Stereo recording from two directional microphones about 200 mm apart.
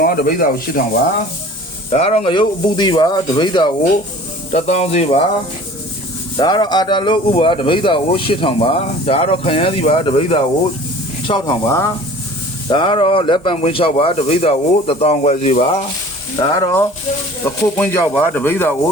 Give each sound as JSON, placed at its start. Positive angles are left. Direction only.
{"t": 0.0, "sound": "speech", "side_deg": 45}
{"t": 1.9, "sound": "speech", "side_deg": 30}
{"t": 4.5, "sound": "speech", "side_deg": 35}
{"t": 6.3, "sound": "speech", "side_deg": 20}
{"t": 16.4, "sound": "speech", "side_deg": 20}